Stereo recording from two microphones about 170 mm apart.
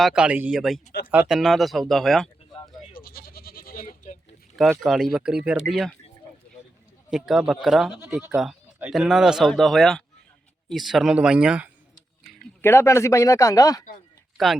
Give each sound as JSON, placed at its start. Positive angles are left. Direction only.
{"t": 0.0, "sound": "speech", "side_deg": -5}
{"t": 3.0, "sound": "goat", "side_deg": 60}
{"t": 4.8, "sound": "speech", "side_deg": 0}
{"t": 7.1, "sound": "speech", "side_deg": -5}
{"t": 12.6, "sound": "speech", "side_deg": 15}
{"t": 14.3, "sound": "speech", "side_deg": 0}